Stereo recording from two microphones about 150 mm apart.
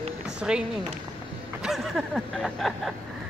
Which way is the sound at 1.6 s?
Centre (ahead or behind).